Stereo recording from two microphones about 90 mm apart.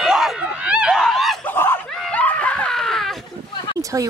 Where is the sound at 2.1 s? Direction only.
15° left (ahead or behind).